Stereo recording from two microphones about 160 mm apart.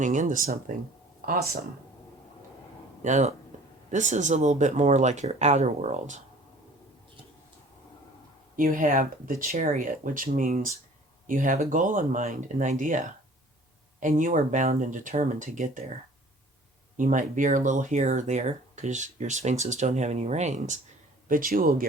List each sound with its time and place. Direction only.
0.0 s speech: 50° right (ahead or behind)
3.0 s speech: 50° right (ahead or behind)
8.5 s speech: 60° right (ahead or behind)
17.0 s speech: 55° right (ahead or behind)
21.2 s speech: 60° right (ahead or behind)